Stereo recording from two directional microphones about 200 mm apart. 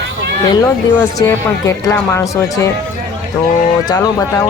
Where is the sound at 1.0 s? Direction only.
15° left (ahead or behind).